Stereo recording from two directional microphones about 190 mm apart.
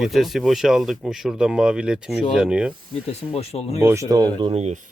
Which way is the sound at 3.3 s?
30° left (ahead or behind).